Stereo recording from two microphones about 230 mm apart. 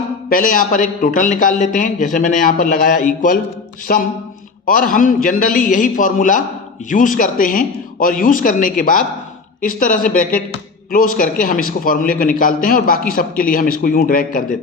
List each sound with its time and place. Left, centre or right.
0.3 s a man's voice: left